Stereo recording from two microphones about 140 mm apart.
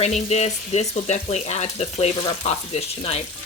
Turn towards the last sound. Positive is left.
turn(degrees=45)  # may be behind; listen again after turning